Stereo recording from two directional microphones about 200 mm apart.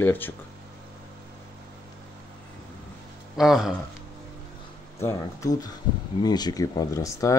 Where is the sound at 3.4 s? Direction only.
Centre (ahead or behind).